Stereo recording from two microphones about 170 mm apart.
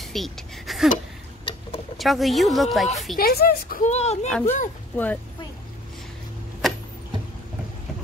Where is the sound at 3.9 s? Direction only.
40° left (ahead or behind).